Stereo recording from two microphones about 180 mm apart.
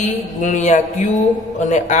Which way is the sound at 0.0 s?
45° left (ahead or behind).